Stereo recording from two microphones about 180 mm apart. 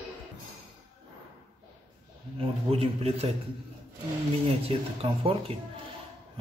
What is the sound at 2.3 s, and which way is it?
Speech, 30° right (ahead or behind).